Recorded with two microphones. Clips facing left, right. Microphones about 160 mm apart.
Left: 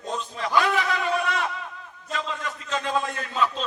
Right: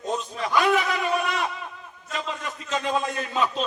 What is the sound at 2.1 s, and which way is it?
A man's voice, 20° right (ahead or behind).